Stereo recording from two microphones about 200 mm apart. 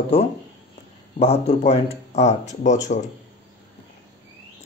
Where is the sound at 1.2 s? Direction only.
35° left (ahead or behind).